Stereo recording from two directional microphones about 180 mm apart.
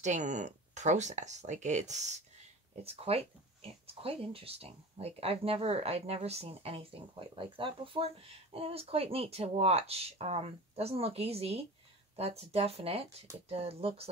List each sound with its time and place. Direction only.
0.0 s speech: 40° right (ahead or behind)